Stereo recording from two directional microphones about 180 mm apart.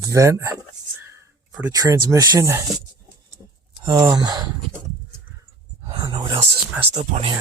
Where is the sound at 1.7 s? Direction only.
20° right (ahead or behind).